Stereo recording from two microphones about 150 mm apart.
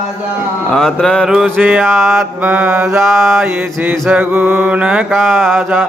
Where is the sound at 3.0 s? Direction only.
Centre (ahead or behind).